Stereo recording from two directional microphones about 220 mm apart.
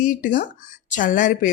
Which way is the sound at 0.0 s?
35° left (ahead or behind).